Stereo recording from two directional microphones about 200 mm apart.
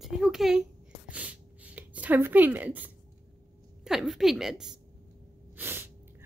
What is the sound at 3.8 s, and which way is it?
A woman's voice, centre (ahead or behind).